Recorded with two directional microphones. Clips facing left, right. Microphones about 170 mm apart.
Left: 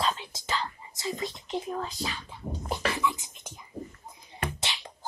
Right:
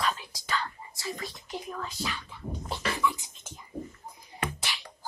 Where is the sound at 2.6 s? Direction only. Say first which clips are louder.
Left 1 dB; 20° left (ahead or behind).